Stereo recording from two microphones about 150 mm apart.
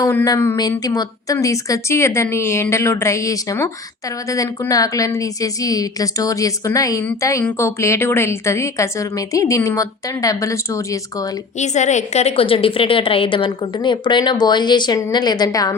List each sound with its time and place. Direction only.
0.0 s a woman's voice: 20° left (ahead or behind)
11.6 s a woman's voice: 50° left (ahead or behind); by 15.7 s 25° left (ahead or behind)